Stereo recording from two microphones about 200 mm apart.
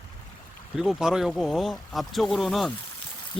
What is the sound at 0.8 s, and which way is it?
Speech, centre (ahead or behind).